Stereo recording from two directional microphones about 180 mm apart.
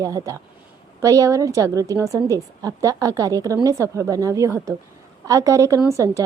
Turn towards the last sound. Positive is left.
turn(degrees=-15)  # may be behind; listen again after turning